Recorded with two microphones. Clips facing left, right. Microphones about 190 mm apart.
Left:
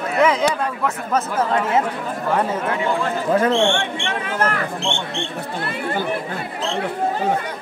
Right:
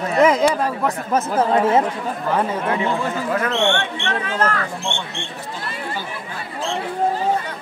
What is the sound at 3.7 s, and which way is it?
Speech, 10° left (ahead or behind).